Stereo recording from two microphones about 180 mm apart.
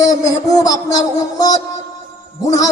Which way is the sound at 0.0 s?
20° left (ahead or behind).